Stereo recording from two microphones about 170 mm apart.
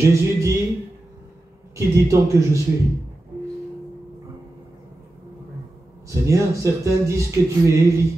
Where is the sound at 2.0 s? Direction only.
15° right (ahead or behind).